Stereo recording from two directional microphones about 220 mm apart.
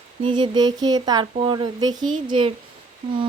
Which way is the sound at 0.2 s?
20° right (ahead or behind).